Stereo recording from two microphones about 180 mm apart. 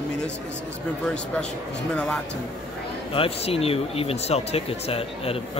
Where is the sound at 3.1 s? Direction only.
30° left (ahead or behind).